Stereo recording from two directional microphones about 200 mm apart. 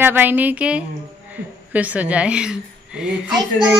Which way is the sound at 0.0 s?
10° right (ahead or behind).